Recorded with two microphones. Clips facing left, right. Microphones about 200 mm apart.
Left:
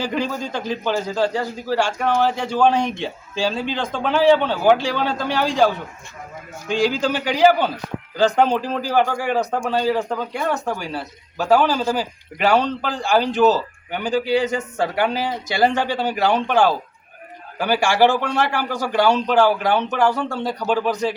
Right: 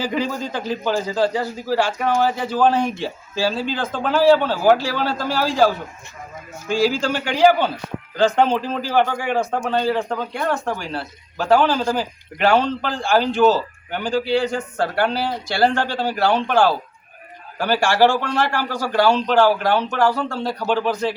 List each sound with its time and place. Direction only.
0.0 s a man's voice: 10° right (ahead or behind)
14.1 s a man's voice: 20° left (ahead or behind)
17.6 s a man's voice: 10° left (ahead or behind)
19.0 s a man's voice: centre (ahead or behind)
19.5 s a man's voice: 15° left (ahead or behind)